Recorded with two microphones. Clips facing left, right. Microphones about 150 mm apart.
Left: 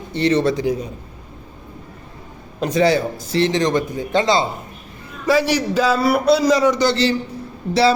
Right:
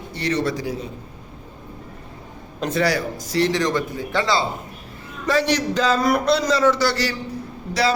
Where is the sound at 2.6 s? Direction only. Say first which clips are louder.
Left 5 dB; 20° left (ahead or behind).